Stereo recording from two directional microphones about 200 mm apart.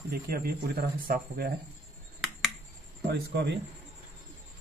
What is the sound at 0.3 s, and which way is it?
A man's voice, 50° right (ahead or behind).